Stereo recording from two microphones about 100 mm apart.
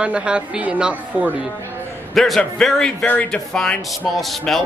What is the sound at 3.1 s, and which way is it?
Speech, 15° left (ahead or behind).